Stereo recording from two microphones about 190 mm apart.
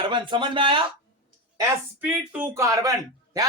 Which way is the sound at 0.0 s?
25° right (ahead or behind).